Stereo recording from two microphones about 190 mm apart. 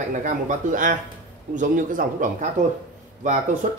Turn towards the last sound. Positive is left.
turn(degrees=-45)  # may be behind; listen again after turning